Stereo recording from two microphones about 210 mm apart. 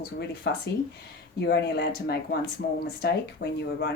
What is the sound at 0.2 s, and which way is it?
Speech, 50° left (ahead or behind).